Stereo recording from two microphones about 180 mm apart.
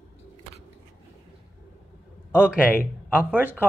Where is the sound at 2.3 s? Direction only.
10° left (ahead or behind).